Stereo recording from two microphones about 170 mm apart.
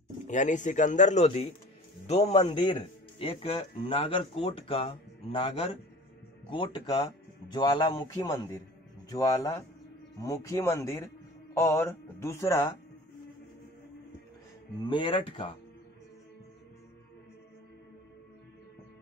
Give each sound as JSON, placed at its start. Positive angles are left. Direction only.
{"t": 0.3, "sound": "a man's voice", "side_deg": 45}
{"t": 14.8, "sound": "speech", "side_deg": 30}